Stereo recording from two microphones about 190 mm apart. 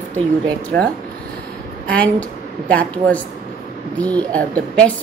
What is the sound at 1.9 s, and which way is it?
A woman's voice, 5° left (ahead or behind).